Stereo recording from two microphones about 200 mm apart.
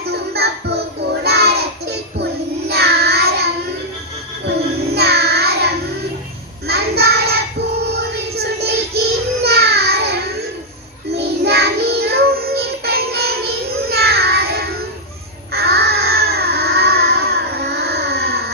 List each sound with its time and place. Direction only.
0.1 s music: 55° right (ahead or behind)
1.2 s child singing: 55° right (ahead or behind)
4.9 s child singing: 55° right (ahead or behind)
11.2 s child singing: 55° right (ahead or behind)
15.5 s baby cry: 55° right (ahead or behind)